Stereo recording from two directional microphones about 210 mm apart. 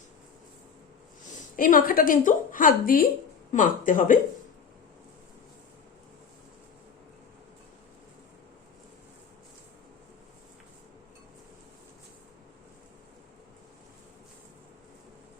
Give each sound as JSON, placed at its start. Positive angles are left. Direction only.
{"t": 1.3, "sound": "a woman's voice", "side_deg": 40}